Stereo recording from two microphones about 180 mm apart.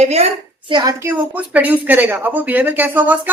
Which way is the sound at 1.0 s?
10° right (ahead or behind).